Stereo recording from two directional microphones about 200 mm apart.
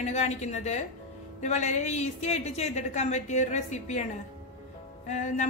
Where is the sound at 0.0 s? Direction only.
35° left (ahead or behind).